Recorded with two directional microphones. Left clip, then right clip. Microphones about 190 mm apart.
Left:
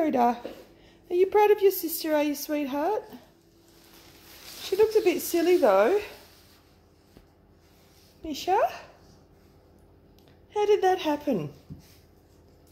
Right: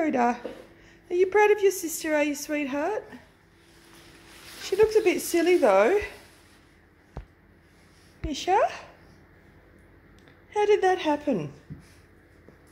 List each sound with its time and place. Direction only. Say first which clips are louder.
0.0 s a woman's voice: left 1 dB; 10° left (ahead or behind)
4.6 s a woman's voice: right 1 dB; 10° left (ahead or behind)
8.2 s a woman's voice: right 1 dB; centre (ahead or behind)
10.5 s a woman's voice: right 1 dB; 5° left (ahead or behind)